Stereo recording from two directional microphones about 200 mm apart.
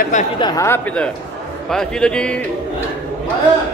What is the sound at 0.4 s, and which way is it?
Speech, 20° left (ahead or behind).